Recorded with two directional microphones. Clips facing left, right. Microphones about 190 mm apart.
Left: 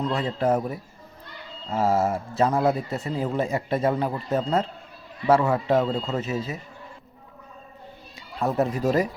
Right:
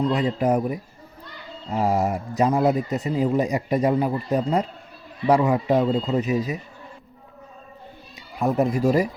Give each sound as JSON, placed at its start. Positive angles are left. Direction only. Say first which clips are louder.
{"t": 0.1, "sound": "speech", "louder": "right 2 dB", "side_deg": -15}
{"t": 8.4, "sound": "speech", "louder": "right 3 dB", "side_deg": -15}